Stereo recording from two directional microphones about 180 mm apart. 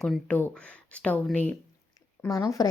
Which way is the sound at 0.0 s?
5° left (ahead or behind).